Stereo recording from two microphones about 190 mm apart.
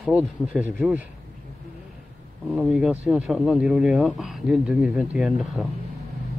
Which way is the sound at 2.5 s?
5° right (ahead or behind).